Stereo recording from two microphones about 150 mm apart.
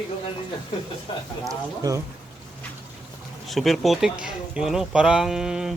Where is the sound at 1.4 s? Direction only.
20° right (ahead or behind).